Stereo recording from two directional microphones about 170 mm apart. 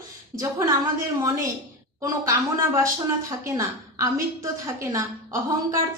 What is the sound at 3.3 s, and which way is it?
A woman's voice, 20° right (ahead or behind).